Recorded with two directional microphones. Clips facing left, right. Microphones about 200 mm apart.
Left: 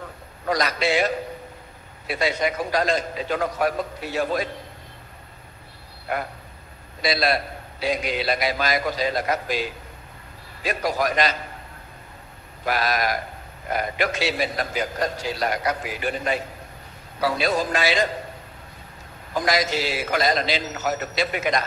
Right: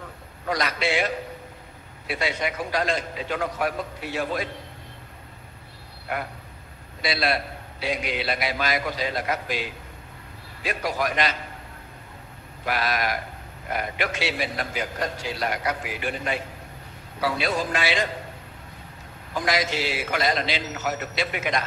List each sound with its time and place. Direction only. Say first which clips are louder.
0.5 s a man's voice: left 3 dB; 40° left (ahead or behind)
6.1 s a man's voice: left 3 dB; 40° left (ahead or behind)
12.6 s a man's voice: left 2 dB; 40° left (ahead or behind)
19.3 s a man's voice: left 3 dB; 40° left (ahead or behind)